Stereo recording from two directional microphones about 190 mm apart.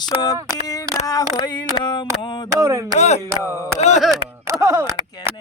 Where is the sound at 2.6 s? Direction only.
15° right (ahead or behind).